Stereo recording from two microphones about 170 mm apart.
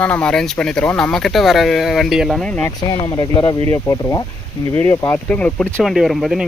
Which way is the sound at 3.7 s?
15° left (ahead or behind).